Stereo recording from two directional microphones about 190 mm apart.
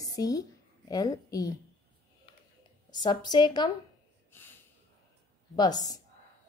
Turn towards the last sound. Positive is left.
turn(degrees=20)  # may be behind; listen again after turning